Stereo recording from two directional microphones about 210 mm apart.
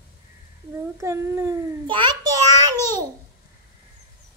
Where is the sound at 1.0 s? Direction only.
15° right (ahead or behind).